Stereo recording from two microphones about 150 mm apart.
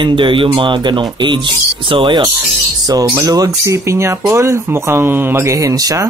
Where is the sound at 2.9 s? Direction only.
20° right (ahead or behind).